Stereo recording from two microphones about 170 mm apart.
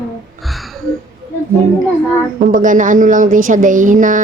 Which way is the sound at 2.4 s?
50° right (ahead or behind).